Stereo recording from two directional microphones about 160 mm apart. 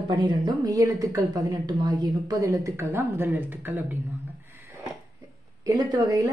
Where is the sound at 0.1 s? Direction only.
30° right (ahead or behind); by 4.0 s 10° right (ahead or behind).